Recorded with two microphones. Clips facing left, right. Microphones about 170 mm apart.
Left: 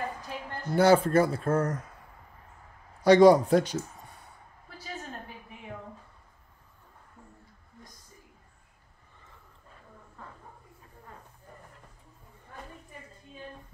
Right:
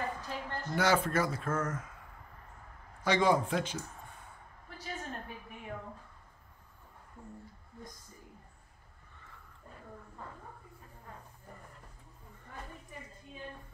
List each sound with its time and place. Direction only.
0.2 s a sound: 10° left (ahead or behind)
0.7 s a man's voice: 30° left (ahead or behind)
3.0 s a man's voice: 40° left (ahead or behind)